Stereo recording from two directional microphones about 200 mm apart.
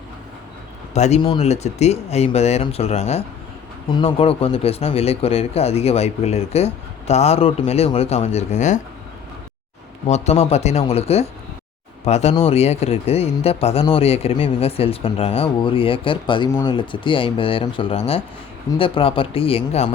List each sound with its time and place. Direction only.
0.9 s speech: 35° left (ahead or behind)
10.1 s speech: 30° left (ahead or behind)